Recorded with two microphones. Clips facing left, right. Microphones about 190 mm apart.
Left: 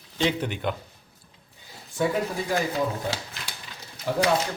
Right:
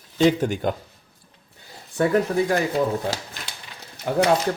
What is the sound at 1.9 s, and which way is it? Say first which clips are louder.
Speech: right 6 dB; 65° right (ahead or behind).